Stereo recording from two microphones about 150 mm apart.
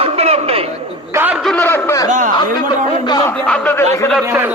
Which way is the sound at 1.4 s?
10° left (ahead or behind).